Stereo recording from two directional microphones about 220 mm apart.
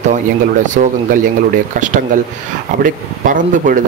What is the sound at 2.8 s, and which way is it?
Speech, 35° right (ahead or behind).